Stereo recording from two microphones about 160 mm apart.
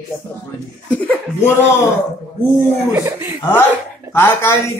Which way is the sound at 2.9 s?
15° right (ahead or behind).